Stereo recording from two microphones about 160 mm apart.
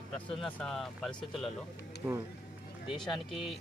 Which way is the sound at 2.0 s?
15° right (ahead or behind).